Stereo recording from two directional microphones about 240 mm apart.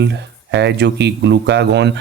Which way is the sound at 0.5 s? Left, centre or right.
Right.